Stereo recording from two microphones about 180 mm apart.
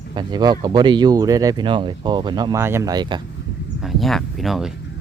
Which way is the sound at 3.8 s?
Centre (ahead or behind).